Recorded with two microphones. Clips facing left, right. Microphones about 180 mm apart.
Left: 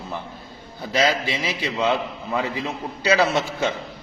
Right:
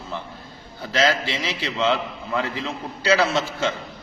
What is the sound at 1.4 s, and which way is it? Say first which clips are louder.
A man's voice: even; 15° left (ahead or behind).